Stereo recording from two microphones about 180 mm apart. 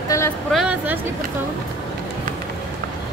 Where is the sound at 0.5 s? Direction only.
5° right (ahead or behind).